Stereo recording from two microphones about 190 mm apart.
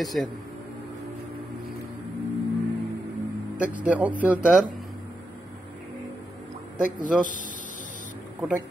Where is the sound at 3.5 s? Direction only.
5° right (ahead or behind).